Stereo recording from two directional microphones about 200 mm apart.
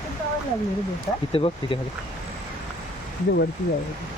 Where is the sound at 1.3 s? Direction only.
25° left (ahead or behind).